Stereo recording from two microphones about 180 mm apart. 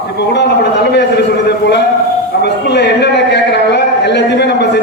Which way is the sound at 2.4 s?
70° left (ahead or behind).